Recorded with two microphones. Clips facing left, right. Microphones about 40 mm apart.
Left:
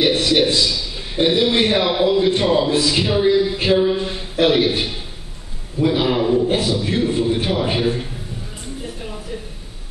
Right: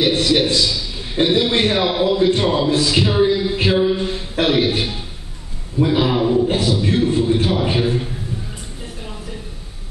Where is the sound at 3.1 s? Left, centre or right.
Centre.